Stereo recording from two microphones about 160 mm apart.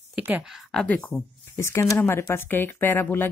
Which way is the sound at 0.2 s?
5° right (ahead or behind).